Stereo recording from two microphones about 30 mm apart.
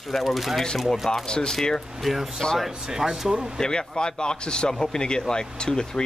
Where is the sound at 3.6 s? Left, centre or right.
Left.